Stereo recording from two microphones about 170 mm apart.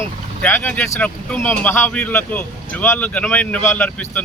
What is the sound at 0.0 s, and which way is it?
Speech, 15° left (ahead or behind).